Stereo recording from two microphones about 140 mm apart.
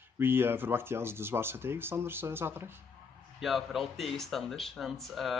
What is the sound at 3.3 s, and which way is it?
Speech, centre (ahead or behind).